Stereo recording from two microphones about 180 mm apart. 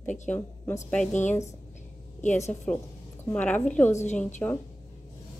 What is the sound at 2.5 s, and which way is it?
A woman's voice, 5° left (ahead or behind).